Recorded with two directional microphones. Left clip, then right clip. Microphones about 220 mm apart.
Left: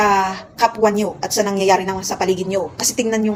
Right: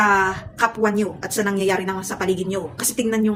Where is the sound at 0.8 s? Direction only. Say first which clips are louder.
Left 4 dB; 15° right (ahead or behind).